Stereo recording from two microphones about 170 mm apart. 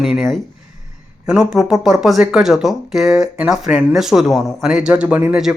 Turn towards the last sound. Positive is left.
turn(degrees=-5)  # may be behind; listen again after turning